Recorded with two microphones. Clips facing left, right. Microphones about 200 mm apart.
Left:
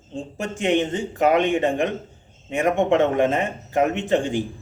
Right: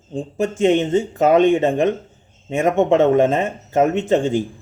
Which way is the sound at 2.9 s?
20° right (ahead or behind).